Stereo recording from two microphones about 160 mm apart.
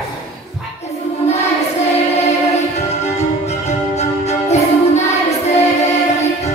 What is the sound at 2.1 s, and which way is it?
Music, 45° left (ahead or behind).